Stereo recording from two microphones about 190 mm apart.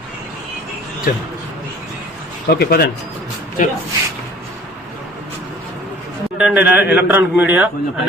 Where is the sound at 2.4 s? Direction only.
55° left (ahead or behind).